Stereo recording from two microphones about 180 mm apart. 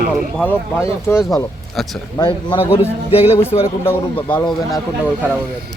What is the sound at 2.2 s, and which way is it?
A man's voice, 25° left (ahead or behind).